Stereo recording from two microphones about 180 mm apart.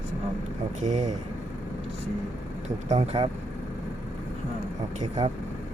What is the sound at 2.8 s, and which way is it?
Speech, 30° right (ahead or behind).